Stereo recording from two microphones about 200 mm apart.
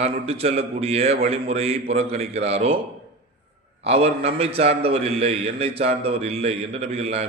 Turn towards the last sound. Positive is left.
turn(degrees=-30)  # may be behind; listen again after turning